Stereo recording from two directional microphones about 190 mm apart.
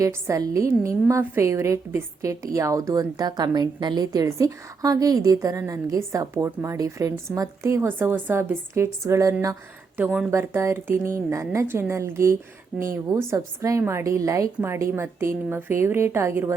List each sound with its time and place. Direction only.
0.0 s a woman's voice: 15° right (ahead or behind)